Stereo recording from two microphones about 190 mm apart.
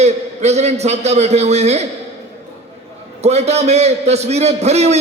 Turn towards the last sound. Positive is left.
turn(degrees=-35)  # may be behind; listen again after turning